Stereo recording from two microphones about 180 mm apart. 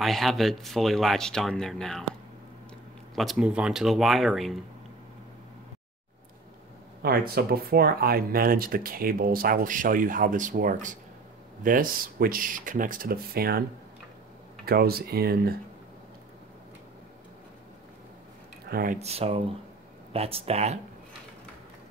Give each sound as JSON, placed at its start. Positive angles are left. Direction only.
{"t": 0.0, "sound": "speech", "side_deg": 0}
{"t": 3.2, "sound": "speech", "side_deg": -5}
{"t": 7.0, "sound": "speech", "side_deg": -60}
{"t": 18.7, "sound": "speech", "side_deg": -55}
{"t": 18.9, "sound": "speech", "side_deg": -35}